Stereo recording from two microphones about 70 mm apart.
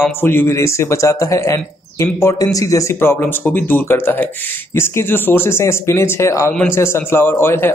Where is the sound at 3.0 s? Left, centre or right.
Left.